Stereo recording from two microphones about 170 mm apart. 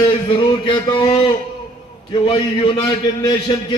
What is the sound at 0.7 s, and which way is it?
A man's voice, 30° left (ahead or behind).